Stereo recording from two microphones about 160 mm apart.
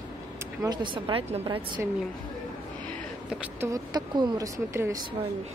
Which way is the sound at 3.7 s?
25° right (ahead or behind).